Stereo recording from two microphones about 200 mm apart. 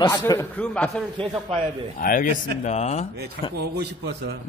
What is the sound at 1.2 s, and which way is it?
Speech, 25° right (ahead or behind).